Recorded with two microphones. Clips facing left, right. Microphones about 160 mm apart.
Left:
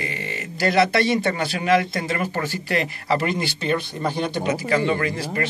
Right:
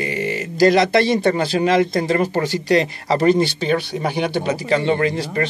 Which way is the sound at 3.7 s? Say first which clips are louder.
Right 3 dB; 75° right (ahead or behind).